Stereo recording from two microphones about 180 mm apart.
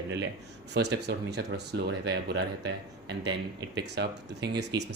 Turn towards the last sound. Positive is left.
turn(degrees=-70)  # may be behind; listen again after turning